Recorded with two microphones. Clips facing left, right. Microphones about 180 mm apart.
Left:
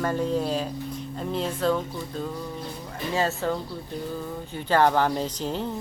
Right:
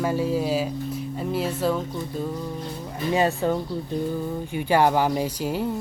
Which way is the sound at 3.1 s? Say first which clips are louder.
Right 4 dB; 15° right (ahead or behind).